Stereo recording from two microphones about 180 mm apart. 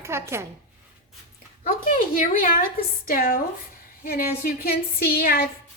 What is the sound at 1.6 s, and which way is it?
A woman's voice, 50° left (ahead or behind).